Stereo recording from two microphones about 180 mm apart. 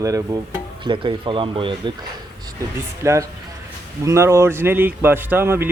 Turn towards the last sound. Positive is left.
turn(degrees=-10)  # may be behind; listen again after turning